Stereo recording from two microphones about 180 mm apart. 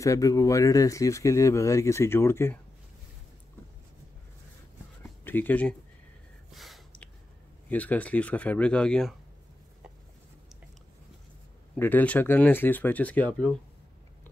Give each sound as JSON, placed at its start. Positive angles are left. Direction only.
{"t": 0.0, "sound": "speech", "side_deg": 20}
{"t": 5.2, "sound": "speech", "side_deg": 10}
{"t": 6.5, "sound": "gasp", "side_deg": 0}
{"t": 7.7, "sound": "speech", "side_deg": 10}
{"t": 11.7, "sound": "speech", "side_deg": 10}